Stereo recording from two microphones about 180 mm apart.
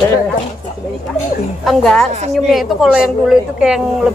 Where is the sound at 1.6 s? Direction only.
Centre (ahead or behind).